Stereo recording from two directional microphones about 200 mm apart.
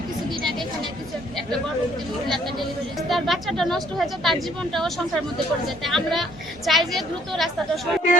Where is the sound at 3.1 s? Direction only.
Centre (ahead or behind).